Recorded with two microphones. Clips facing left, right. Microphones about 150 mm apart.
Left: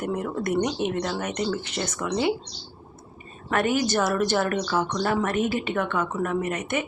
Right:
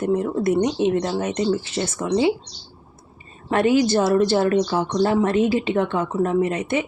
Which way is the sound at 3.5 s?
30° right (ahead or behind).